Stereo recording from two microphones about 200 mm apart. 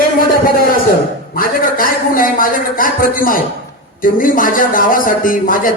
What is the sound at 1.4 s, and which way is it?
A man's voice, 45° left (ahead or behind).